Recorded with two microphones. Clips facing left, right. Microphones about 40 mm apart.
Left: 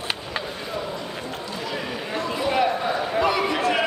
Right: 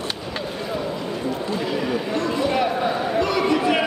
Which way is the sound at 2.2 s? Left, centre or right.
Centre.